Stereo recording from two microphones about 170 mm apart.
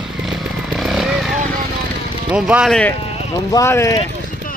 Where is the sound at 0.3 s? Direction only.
Centre (ahead or behind).